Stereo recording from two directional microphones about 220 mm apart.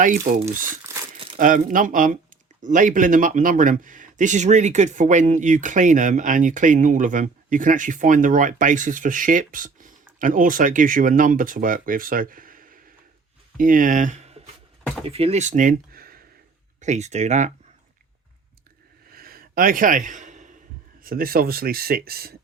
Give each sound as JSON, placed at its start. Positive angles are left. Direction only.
{"t": 0.6, "sound": "crumpling", "side_deg": -15}
{"t": 1.4, "sound": "speech", "side_deg": -35}
{"t": 16.8, "sound": "speech", "side_deg": -30}
{"t": 19.1, "sound": "a sound", "side_deg": -45}
{"t": 21.0, "sound": "speech", "side_deg": -40}